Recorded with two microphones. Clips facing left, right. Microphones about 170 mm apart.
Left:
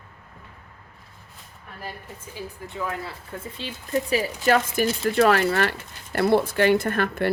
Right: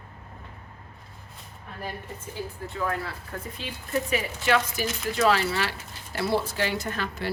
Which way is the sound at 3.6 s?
30° left (ahead or behind).